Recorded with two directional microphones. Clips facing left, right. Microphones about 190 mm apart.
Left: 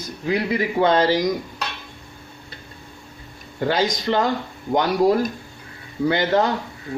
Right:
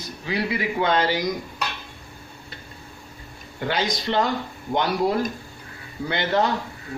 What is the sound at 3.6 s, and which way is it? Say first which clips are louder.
Speech: left 4 dB; 35° left (ahead or behind).